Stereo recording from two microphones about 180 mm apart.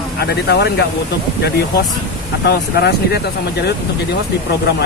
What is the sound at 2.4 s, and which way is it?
Speech, 65° left (ahead or behind).